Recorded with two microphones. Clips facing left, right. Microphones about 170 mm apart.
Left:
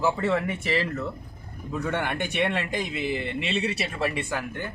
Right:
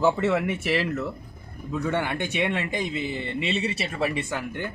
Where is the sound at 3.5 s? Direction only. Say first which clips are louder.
Even; 55° left (ahead or behind).